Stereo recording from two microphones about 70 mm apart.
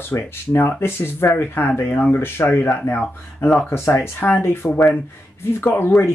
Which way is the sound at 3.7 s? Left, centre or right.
Left.